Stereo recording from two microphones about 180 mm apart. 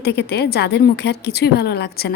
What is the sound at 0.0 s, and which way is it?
A woman's voice, 65° left (ahead or behind).